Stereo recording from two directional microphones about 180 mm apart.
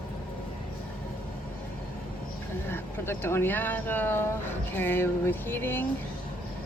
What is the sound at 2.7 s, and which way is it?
Speech, 15° left (ahead or behind).